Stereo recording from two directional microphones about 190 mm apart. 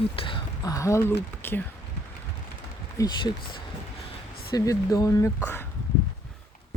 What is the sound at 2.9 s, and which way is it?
Speech, 20° left (ahead or behind).